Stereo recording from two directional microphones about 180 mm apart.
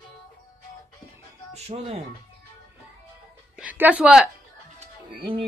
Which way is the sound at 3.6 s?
10° right (ahead or behind).